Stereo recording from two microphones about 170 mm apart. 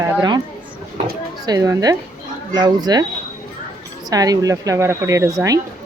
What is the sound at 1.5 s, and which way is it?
A woman's voice, 20° right (ahead or behind).